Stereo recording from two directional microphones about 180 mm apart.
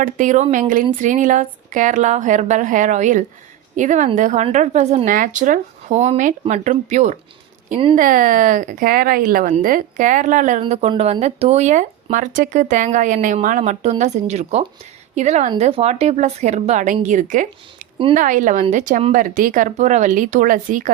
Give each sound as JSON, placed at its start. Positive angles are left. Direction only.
{"t": 0.0, "sound": "speech", "side_deg": -45}
{"t": 10.6, "sound": "speech", "side_deg": -30}